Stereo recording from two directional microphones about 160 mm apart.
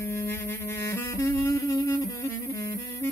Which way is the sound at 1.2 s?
20° left (ahead or behind).